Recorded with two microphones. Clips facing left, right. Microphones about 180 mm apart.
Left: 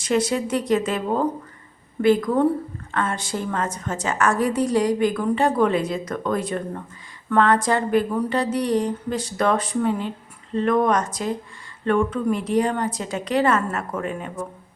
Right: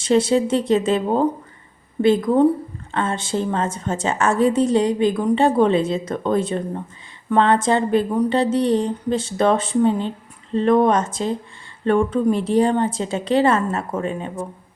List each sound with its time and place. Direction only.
0.0 s a woman's voice: 25° right (ahead or behind)